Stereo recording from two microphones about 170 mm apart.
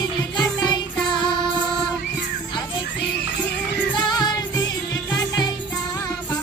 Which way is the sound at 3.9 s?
25° left (ahead or behind).